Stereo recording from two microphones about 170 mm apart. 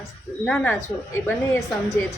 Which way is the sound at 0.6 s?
15° left (ahead or behind).